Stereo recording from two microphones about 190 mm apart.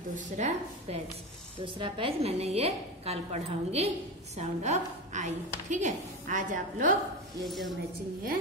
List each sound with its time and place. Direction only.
0.1 s a woman's voice: 40° right (ahead or behind)
1.6 s a woman's voice: 25° right (ahead or behind); by 7.0 s 45° right (ahead or behind)
7.4 s speech: centre (ahead or behind)